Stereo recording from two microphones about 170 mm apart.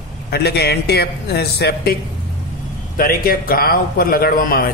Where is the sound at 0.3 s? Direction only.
70° left (ahead or behind).